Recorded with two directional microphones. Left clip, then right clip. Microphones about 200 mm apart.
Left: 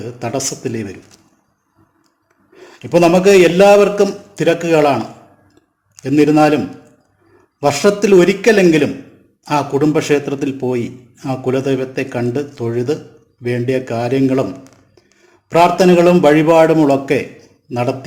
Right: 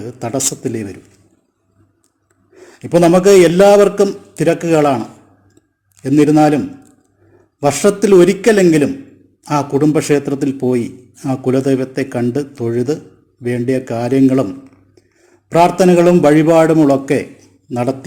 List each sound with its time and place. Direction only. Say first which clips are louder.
0.0 s speech: right 1 dB; 35° right (ahead or behind)
2.6 s speech: even; 35° right (ahead or behind)
6.0 s speech: even; 35° right (ahead or behind)
7.6 s a man's voice: even; 35° right (ahead or behind)